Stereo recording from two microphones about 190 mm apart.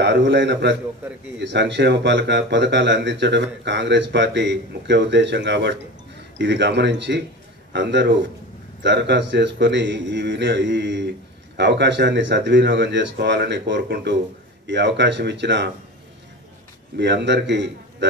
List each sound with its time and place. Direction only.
0.0 s a man's voice: 65° right (ahead or behind)
16.9 s speech: 65° right (ahead or behind)